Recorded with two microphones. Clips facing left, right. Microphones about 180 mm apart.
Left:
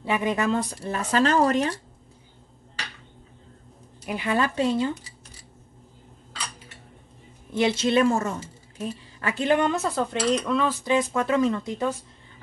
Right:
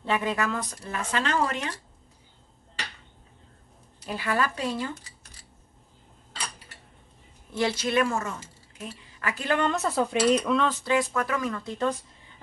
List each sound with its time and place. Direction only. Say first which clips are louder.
0.0 s speech: left 2 dB; 15° left (ahead or behind)
0.5 s speech: left 6 dB; 30° left (ahead or behind)
4.0 s speech: left 3 dB; 15° left (ahead or behind)
7.5 s speech: left 4 dB; 20° left (ahead or behind)
9.7 s speech: left 1 dB; centre (ahead or behind)
10.8 s speech: left 2 dB; 20° left (ahead or behind)